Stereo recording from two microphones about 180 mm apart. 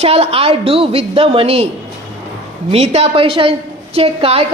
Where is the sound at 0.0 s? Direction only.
35° right (ahead or behind).